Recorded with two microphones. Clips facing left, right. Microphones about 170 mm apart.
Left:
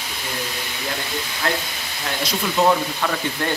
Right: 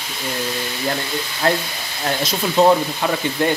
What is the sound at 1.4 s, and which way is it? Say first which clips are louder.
Speech: right 6 dB; 40° right (ahead or behind).